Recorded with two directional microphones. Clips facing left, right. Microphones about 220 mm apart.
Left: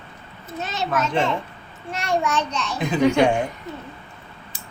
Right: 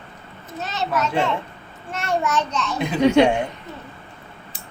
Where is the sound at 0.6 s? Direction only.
Centre (ahead or behind).